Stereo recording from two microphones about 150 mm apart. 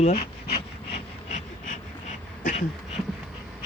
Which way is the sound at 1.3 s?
55° left (ahead or behind).